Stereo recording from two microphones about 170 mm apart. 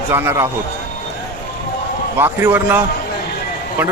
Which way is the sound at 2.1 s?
10° right (ahead or behind).